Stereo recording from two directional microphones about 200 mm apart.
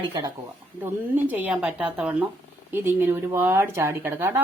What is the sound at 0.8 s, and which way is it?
A woman's voice, 10° right (ahead or behind).